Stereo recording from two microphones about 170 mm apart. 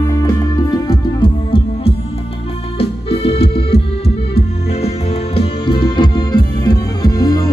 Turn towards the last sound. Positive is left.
turn(degrees=20)  # may be behind; listen again after turning